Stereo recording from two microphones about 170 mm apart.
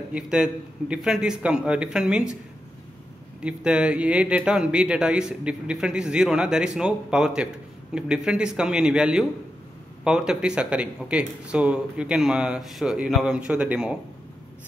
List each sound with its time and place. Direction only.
0.1 s a man's voice: 5° right (ahead or behind)
3.3 s a man's voice: 5° right (ahead or behind)